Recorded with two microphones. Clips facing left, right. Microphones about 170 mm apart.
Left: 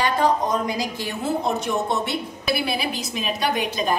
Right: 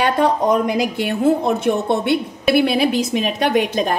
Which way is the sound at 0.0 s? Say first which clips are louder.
Right 4 dB; 65° right (ahead or behind).